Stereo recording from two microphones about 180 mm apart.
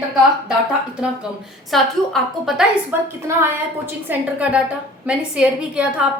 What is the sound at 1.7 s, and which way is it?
Speech, centre (ahead or behind).